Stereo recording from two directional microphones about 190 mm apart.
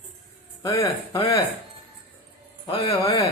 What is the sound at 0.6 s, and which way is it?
Speech, 20° left (ahead or behind).